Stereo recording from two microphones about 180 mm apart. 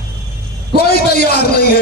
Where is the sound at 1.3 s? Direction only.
65° left (ahead or behind).